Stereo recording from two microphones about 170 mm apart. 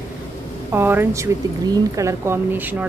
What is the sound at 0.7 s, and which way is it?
A woman's voice, 10° right (ahead or behind).